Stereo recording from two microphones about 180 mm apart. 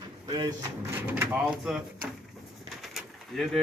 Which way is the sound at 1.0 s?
10° right (ahead or behind).